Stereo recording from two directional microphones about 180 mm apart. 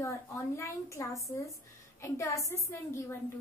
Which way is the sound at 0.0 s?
15° left (ahead or behind).